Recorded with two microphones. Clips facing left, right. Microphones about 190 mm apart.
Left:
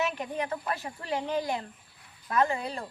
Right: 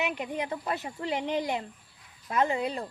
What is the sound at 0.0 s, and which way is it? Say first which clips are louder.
Speech: even; 15° right (ahead or behind).